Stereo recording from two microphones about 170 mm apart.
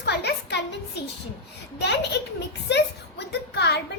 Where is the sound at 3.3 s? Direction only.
80° left.